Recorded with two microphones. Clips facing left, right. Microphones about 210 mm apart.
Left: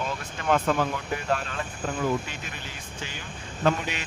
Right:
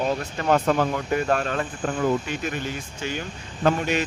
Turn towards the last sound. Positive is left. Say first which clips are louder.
# right 4 dB
turn(degrees=-45)  # may be behind; listen again after turning